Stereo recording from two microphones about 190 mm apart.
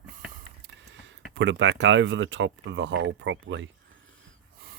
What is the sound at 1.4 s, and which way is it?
Speech, 75° right (ahead or behind).